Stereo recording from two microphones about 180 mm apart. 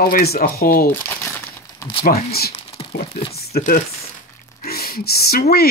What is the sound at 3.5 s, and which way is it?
Speech, 55° left (ahead or behind).